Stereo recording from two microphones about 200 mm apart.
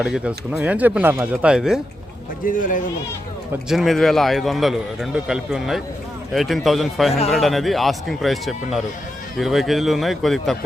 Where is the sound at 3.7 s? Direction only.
Centre (ahead or behind).